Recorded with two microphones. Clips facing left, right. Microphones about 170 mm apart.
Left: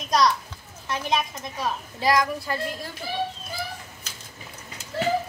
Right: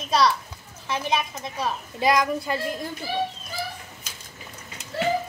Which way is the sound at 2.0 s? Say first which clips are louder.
Right 1 dB; 20° right (ahead or behind).